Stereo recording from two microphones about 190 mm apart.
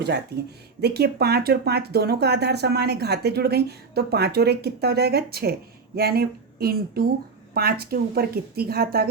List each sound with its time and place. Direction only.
0.0 s a woman's voice: 60° right (ahead or behind)